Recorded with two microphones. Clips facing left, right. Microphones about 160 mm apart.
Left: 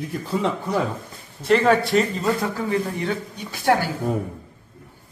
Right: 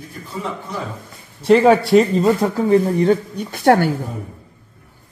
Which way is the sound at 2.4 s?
30° right (ahead or behind).